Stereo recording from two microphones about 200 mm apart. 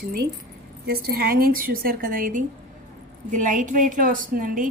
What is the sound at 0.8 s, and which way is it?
A woman's voice, 50° right (ahead or behind).